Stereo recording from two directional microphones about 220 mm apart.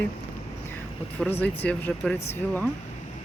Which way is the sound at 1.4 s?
5° left (ahead or behind).